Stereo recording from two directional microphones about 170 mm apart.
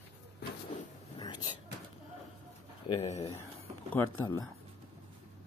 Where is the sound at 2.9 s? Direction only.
40° left (ahead or behind).